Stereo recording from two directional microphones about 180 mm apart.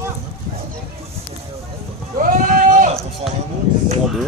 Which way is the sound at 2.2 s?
45° right (ahead or behind).